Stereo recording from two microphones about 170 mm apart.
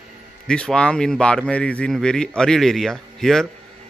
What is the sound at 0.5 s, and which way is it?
A man's voice, 5° left (ahead or behind).